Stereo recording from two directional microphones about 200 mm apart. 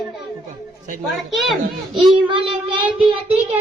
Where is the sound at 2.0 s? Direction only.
25° right (ahead or behind).